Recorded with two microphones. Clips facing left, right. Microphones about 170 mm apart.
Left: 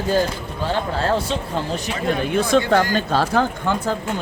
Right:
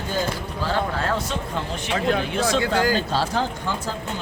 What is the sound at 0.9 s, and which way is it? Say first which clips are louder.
Speech: left 4 dB; 30° left (ahead or behind).